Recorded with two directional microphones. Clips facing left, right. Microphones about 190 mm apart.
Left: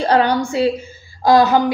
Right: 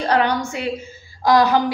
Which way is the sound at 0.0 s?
30° left (ahead or behind).